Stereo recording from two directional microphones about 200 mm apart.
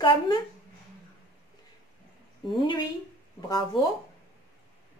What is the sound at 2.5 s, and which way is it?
Speech, 25° left (ahead or behind).